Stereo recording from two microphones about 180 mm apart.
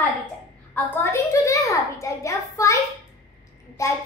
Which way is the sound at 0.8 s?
10° left (ahead or behind).